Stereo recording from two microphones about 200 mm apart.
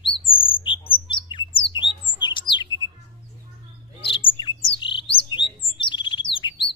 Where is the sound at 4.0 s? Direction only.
25° left (ahead or behind).